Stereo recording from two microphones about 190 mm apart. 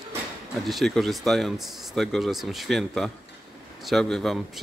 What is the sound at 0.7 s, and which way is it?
Speech, centre (ahead or behind).